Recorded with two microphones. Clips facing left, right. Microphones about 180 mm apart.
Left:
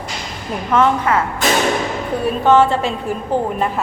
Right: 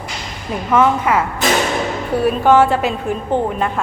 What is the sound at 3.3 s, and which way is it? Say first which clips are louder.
Speech: even; 5° left (ahead or behind).